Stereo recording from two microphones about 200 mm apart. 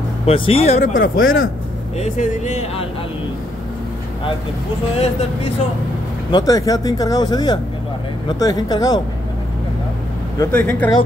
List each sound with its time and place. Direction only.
0.3 s speech: 30° left (ahead or behind)
1.2 s speech: 90° left
2.0 s speech: 35° left (ahead or behind)
4.9 s speech: 30° left (ahead or behind)
6.3 s speech: 15° left (ahead or behind)
10.4 s speech: 5° left (ahead or behind)